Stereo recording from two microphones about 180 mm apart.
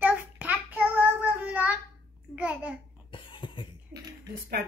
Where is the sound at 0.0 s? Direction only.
10° right (ahead or behind).